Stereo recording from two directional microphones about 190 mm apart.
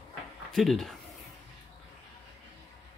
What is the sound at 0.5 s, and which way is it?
Speech, centre (ahead or behind).